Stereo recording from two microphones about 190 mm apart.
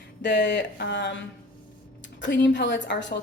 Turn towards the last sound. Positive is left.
turn(degrees=70)  # may be behind; listen again after turning